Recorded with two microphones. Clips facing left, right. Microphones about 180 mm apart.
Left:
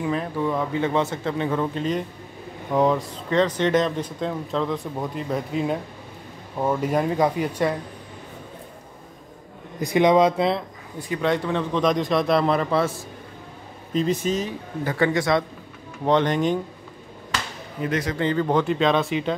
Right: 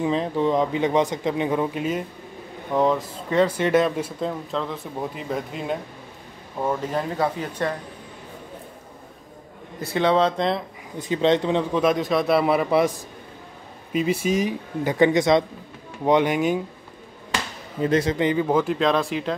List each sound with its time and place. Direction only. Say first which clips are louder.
0.0 s speech: right 3 dB; 20° right (ahead or behind); by 7.7 s 10° left (ahead or behind)
9.8 s speech: left 3 dB; 15° left (ahead or behind)
11.0 s speech: right 3 dB; 25° right (ahead or behind)
11.7 s speech: left 2 dB; 5° right (ahead or behind)
17.8 s speech: right 5 dB; 30° right (ahead or behind)
18.1 s speech: right 1 dB; 15° right (ahead or behind)